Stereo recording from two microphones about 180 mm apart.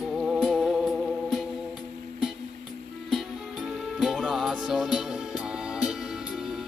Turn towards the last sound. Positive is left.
turn(degrees=-5)  # may be behind; listen again after turning